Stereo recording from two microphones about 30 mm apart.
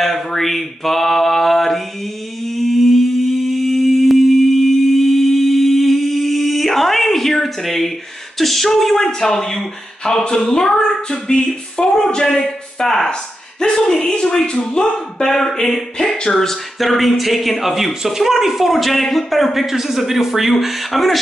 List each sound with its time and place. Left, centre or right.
0.0 s mantra: centre
2.4 s humming: centre
8.4 s a sound: centre
9.3 s speech: centre
12.8 s a sound: centre
13.1 s speech: left
15.2 s a sound: centre
16.8 s speech: centre
19.6 s a man's voice: centre